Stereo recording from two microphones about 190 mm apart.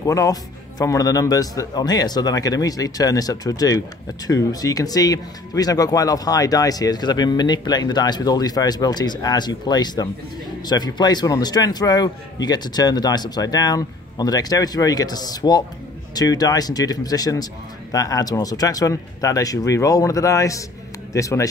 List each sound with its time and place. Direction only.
0.0 s a man's voice: 15° left (ahead or behind)